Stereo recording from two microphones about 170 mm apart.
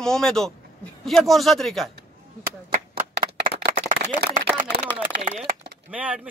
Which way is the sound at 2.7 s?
60° right (ahead or behind).